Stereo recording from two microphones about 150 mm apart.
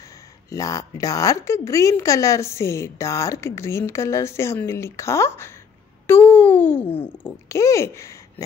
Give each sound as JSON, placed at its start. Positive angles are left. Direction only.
{"t": 0.5, "sound": "a woman's voice", "side_deg": 20}